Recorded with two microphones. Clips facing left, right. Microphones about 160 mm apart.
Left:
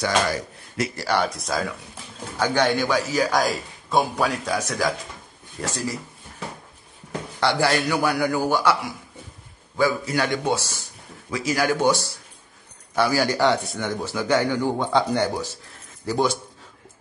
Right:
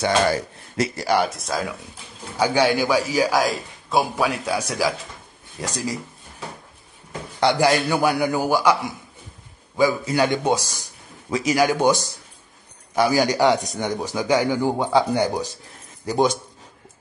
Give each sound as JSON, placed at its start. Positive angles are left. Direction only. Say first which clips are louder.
{"t": 0.0, "sound": "speech", "louder": "right 3 dB", "side_deg": -25}
{"t": 1.0, "sound": "a man's voice", "louder": "right 2 dB", "side_deg": -10}
{"t": 1.3, "sound": "speech", "louder": "even", "side_deg": 0}
{"t": 2.3, "sound": "a man's voice", "louder": "right 2 dB", "side_deg": -10}
{"t": 7.3, "sound": "a man's voice", "louder": "right 3 dB", "side_deg": -15}
{"t": 9.8, "sound": "a man's voice", "louder": "right 3 dB", "side_deg": -15}